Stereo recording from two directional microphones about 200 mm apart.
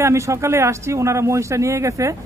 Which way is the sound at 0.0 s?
15° right (ahead or behind).